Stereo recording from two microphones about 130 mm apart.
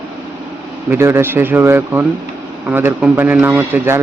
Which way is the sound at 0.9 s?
20° right (ahead or behind).